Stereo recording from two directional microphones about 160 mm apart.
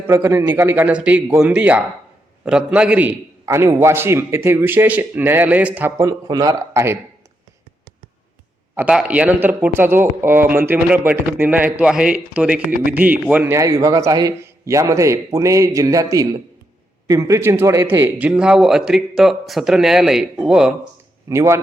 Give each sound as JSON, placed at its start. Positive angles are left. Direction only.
{"t": 0.1, "sound": "a man's voice", "side_deg": -15}
{"t": 8.7, "sound": "a man's voice", "side_deg": -5}
{"t": 21.2, "sound": "a man's voice", "side_deg": -15}